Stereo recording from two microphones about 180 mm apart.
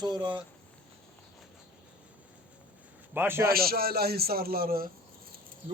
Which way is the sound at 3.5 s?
55° right (ahead or behind).